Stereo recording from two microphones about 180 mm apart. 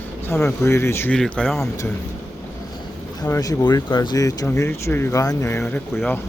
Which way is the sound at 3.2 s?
15° left (ahead or behind).